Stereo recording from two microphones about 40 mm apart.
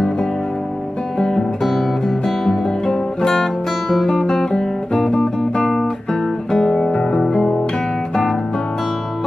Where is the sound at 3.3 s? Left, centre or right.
Centre.